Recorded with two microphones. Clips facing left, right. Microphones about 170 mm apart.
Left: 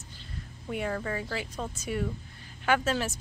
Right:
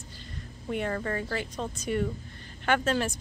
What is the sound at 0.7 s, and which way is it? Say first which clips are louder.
Speech: right 2 dB; centre (ahead or behind).